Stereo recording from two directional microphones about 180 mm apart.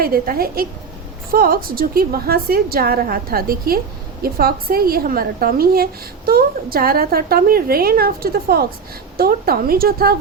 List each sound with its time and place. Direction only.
0.0 s a woman's voice: 55° right (ahead or behind)